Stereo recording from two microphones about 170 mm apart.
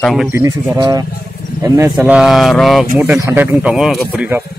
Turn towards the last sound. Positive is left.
turn(degrees=-10)  # may be behind; listen again after turning